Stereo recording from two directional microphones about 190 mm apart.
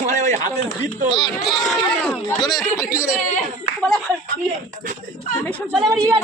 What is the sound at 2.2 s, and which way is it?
Speech, 20° left (ahead or behind).